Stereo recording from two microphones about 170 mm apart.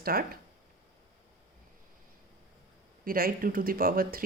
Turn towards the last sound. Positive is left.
turn(degrees=-60)  # may be behind; listen again after turning